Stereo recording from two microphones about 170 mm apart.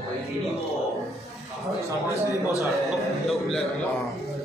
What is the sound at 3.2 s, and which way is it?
Speech, centre (ahead or behind).